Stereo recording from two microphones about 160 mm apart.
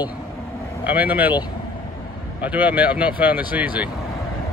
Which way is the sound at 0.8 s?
10° right (ahead or behind).